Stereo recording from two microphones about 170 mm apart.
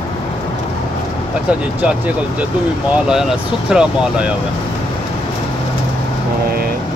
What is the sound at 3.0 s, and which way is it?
Speech, 5° right (ahead or behind).